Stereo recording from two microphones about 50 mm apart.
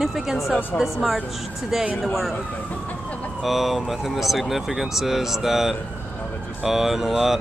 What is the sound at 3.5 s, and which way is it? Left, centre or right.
Speech, centre.